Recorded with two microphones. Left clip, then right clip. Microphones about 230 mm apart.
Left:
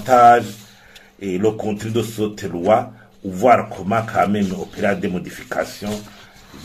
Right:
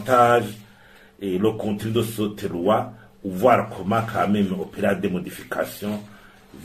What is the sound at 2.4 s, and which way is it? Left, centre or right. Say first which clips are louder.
A man's voice: left 5 dB; left.